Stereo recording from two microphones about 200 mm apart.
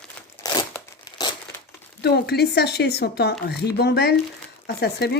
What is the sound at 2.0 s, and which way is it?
Speech, 55° left (ahead or behind).